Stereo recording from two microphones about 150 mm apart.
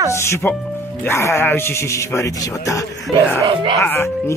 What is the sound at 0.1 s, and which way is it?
Speech, 15° left (ahead or behind).